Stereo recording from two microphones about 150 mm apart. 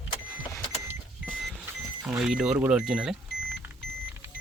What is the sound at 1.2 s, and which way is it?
Vehicle, centre (ahead or behind).